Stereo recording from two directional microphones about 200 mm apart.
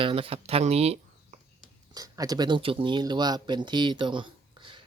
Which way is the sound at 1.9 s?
20° right (ahead or behind).